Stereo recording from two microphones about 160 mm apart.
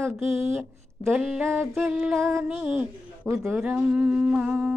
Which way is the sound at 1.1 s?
5° right (ahead or behind).